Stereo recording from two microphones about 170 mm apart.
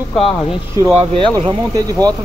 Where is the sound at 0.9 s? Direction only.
30° right (ahead or behind).